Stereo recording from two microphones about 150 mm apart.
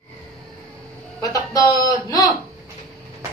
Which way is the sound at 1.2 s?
25° left (ahead or behind).